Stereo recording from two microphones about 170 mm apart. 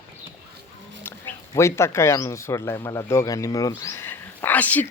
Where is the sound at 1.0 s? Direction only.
15° left (ahead or behind).